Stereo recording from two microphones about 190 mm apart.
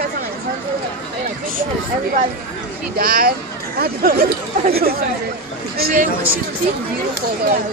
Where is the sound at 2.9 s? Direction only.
50° right (ahead or behind).